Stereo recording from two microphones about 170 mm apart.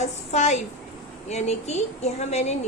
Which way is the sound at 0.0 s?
40° left (ahead or behind).